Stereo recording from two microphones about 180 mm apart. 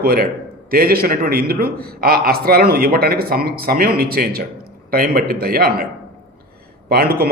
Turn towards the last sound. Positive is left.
turn(degrees=-60)  # may be behind; listen again after turning